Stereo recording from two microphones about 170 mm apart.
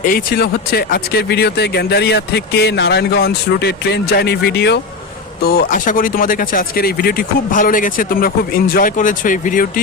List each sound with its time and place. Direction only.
0.0 s speech: 55° left (ahead or behind); by 4.8 s 80° left
5.5 s speech: 55° left (ahead or behind)